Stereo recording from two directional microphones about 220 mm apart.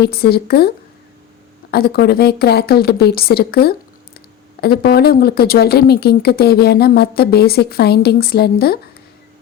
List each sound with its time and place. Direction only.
0.0 s speech: 45° left (ahead or behind)
1.7 s speech: 45° left (ahead or behind)